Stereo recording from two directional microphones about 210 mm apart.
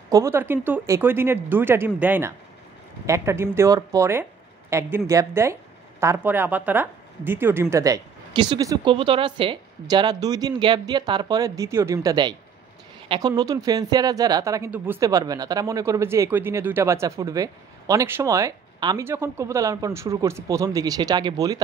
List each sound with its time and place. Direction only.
0.1 s speech: 15° right (ahead or behind)